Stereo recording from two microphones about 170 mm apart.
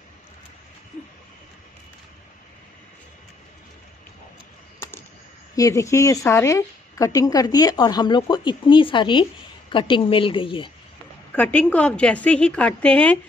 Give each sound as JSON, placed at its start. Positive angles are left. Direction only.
{"t": 5.6, "sound": "a woman's voice", "side_deg": 20}
{"t": 11.3, "sound": "a woman's voice", "side_deg": 10}